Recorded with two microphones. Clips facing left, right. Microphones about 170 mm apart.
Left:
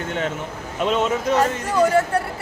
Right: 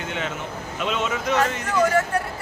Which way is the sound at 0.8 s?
45° left (ahead or behind).